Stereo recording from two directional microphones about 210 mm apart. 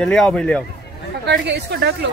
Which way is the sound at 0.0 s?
Centre (ahead or behind).